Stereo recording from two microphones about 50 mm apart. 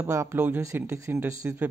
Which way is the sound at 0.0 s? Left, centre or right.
Right.